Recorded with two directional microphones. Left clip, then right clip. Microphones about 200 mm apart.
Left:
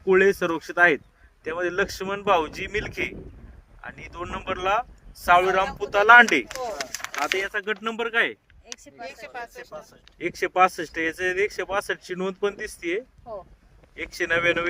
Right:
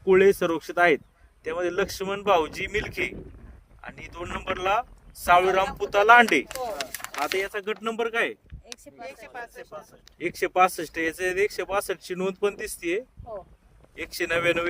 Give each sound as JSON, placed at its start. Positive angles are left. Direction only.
{"t": 0.0, "sound": "speech", "side_deg": -40}
{"t": 6.5, "sound": "speech", "side_deg": -5}
{"t": 7.3, "sound": "speech", "side_deg": -50}
{"t": 9.0, "sound": "speech", "side_deg": 45}
{"t": 9.6, "sound": "speech", "side_deg": 20}
{"t": 10.2, "sound": "speech", "side_deg": -45}
{"t": 13.3, "sound": "speech", "side_deg": 10}
{"t": 13.9, "sound": "speech", "side_deg": -45}